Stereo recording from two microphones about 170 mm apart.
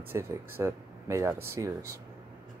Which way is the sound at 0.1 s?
15° right (ahead or behind).